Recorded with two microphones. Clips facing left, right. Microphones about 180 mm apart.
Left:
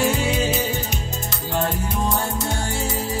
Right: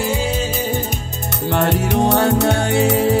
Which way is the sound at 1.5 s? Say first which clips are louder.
Right 7 dB; 75° right (ahead or behind).